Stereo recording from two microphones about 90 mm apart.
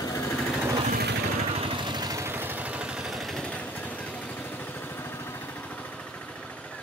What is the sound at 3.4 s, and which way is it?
Vehicle, 15° left (ahead or behind).